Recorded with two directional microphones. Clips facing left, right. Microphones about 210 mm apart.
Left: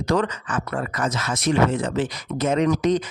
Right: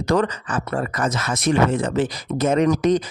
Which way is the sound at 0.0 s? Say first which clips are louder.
Right 2 dB; 50° right (ahead or behind).